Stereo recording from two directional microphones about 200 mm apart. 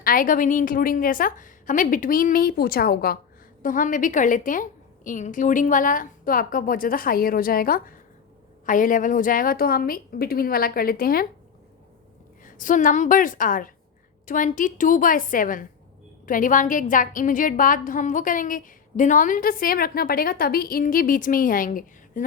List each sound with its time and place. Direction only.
0.0 s a woman's voice: 45° left (ahead or behind)
12.5 s a woman's voice: 40° left (ahead or behind)